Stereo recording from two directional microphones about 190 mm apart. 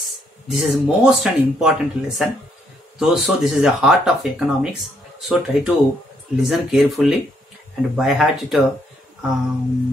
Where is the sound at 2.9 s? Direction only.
Centre (ahead or behind).